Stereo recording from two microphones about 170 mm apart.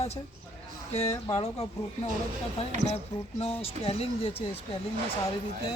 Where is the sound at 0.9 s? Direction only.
35° left (ahead or behind).